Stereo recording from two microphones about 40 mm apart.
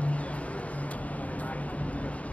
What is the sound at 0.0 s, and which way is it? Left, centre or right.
Vehicle, left.